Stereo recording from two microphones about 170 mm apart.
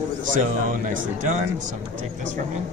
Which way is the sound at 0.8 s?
50° right (ahead or behind).